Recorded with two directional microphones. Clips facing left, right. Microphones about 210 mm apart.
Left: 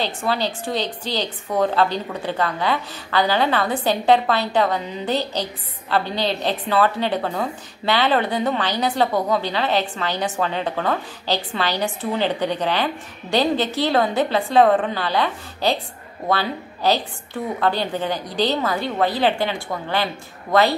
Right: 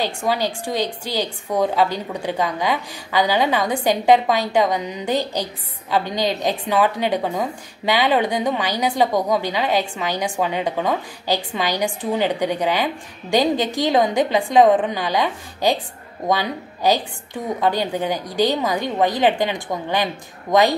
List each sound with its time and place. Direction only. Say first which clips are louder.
0.0 s a woman's voice: right 1 dB; 10° right (ahead or behind)